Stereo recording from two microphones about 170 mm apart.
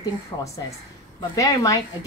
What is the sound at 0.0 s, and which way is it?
A woman's voice, 20° left (ahead or behind).